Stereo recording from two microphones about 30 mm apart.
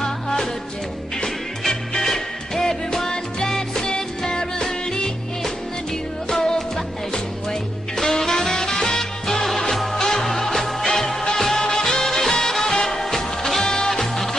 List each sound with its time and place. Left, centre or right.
0.0 s music: centre
6.2 s music: left
8.0 s music: centre